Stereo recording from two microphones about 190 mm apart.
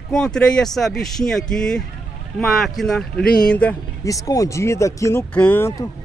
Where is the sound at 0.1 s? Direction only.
5° left (ahead or behind).